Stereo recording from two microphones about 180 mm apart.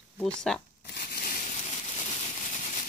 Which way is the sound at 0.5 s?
5° left (ahead or behind).